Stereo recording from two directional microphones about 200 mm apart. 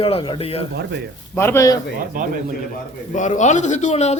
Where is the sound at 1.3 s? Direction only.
15° left (ahead or behind).